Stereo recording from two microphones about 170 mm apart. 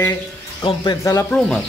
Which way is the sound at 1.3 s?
5° left (ahead or behind).